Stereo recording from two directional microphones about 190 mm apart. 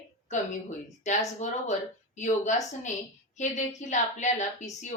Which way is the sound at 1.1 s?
40° left (ahead or behind).